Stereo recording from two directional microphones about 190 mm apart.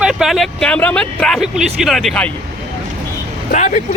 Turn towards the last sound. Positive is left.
turn(degrees=40)  # may be behind; listen again after turning